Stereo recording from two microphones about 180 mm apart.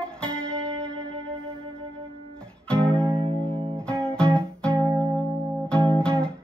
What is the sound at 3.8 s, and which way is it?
Music, 5° left (ahead or behind).